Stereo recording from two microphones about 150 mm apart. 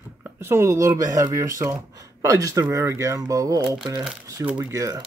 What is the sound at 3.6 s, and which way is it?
Speech, 5° right (ahead or behind).